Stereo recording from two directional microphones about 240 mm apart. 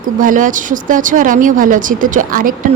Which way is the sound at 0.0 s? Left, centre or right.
Right.